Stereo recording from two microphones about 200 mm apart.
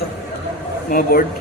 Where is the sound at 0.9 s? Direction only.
50° left (ahead or behind).